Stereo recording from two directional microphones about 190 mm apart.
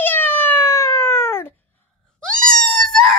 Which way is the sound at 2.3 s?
45° right (ahead or behind).